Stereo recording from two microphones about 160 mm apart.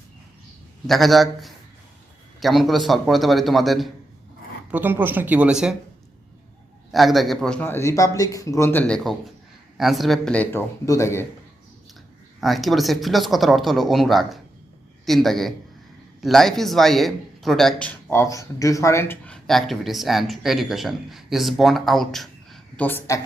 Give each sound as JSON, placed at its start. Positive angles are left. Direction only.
{"t": 0.9, "sound": "a man's voice", "side_deg": 0}
{"t": 4.7, "sound": "speech", "side_deg": -10}
{"t": 6.9, "sound": "a man's voice", "side_deg": 0}
{"t": 12.4, "sound": "a man's voice", "side_deg": 0}
{"t": 22.9, "sound": "speech", "side_deg": 15}